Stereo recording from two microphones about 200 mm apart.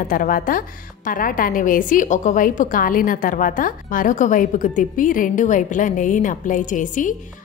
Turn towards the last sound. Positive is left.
turn(degrees=40)  # may be behind; listen again after turning